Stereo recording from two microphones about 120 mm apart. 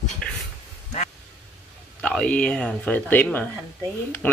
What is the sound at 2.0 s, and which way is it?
Speech, 10° left (ahead or behind).